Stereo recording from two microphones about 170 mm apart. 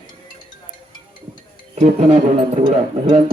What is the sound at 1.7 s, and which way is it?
Speech, 40° right (ahead or behind).